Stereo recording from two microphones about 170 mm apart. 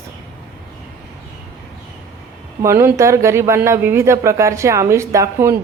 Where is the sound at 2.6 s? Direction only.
15° right (ahead or behind).